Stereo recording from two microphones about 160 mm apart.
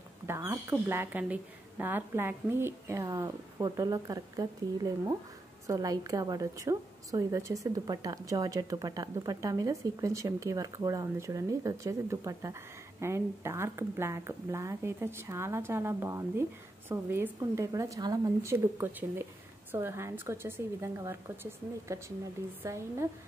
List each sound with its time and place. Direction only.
0.3 s a woman's voice: 15° right (ahead or behind)